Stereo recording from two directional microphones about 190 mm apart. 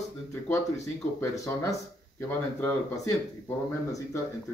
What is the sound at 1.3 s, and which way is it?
Speech, 15° left (ahead or behind).